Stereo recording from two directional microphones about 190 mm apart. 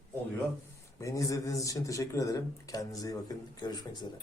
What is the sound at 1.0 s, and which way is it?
A man's voice, 15° left (ahead or behind).